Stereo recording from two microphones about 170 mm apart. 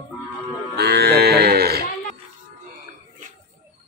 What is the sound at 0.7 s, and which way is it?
Cattle, 70° right (ahead or behind).